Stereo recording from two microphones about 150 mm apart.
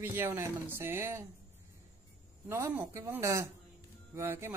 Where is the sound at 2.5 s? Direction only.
20° right (ahead or behind).